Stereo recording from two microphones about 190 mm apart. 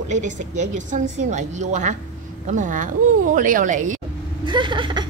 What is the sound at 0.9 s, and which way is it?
A man's voice, 40° right (ahead or behind).